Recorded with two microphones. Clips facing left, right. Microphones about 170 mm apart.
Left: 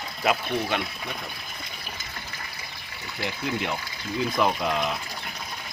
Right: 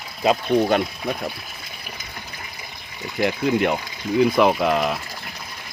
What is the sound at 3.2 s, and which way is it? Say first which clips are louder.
Speech: right 10 dB; 55° right (ahead or behind).